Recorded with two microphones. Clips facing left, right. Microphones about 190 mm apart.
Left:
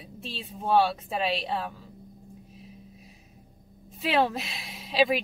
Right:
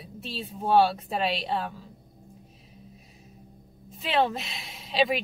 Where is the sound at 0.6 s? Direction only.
Centre (ahead or behind).